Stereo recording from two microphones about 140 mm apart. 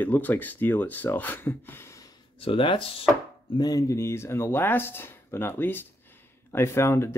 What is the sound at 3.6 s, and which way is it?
Speech, 25° left (ahead or behind).